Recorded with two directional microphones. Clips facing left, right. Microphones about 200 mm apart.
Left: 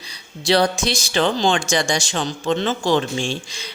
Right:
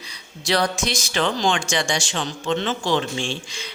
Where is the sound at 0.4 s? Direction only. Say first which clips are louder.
Left 4 dB; 30° left (ahead or behind).